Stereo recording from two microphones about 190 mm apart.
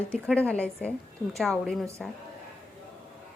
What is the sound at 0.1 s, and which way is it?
A woman's voice, 5° left (ahead or behind).